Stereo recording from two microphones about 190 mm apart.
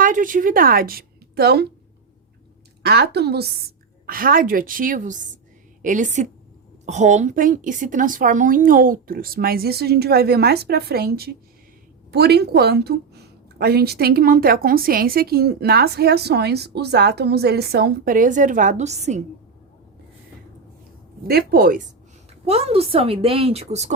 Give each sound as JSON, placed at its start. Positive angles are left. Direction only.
{"t": 0.0, "sound": "a woman's voice", "side_deg": -45}
{"t": 2.8, "sound": "a woman's voice", "side_deg": -60}
{"t": 21.2, "sound": "a woman's voice", "side_deg": -55}
{"t": 22.4, "sound": "a woman's voice", "side_deg": -30}